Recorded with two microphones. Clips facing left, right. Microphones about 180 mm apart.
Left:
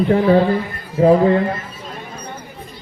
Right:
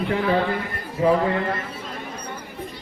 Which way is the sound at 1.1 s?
35° left (ahead or behind).